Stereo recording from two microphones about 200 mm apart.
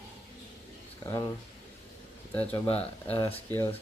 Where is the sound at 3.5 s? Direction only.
10° left (ahead or behind).